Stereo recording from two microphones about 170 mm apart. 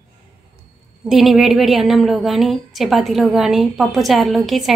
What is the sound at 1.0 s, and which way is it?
A woman's voice, centre (ahead or behind).